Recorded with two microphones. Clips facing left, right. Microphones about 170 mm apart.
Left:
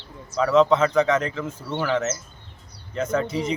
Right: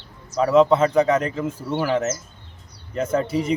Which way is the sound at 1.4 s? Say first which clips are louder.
Right 3 dB; 5° right (ahead or behind).